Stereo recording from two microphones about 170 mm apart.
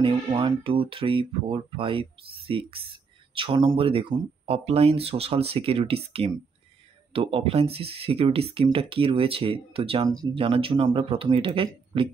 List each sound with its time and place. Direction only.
0.0 s speech: 30° right (ahead or behind)
10.0 s speech: 25° right (ahead or behind)